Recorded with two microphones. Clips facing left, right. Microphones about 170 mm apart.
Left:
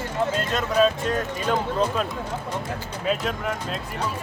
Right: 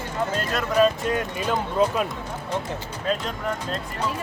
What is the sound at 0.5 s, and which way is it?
Speech, 5° right (ahead or behind).